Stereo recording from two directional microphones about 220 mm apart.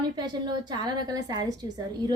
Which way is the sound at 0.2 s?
20° right (ahead or behind).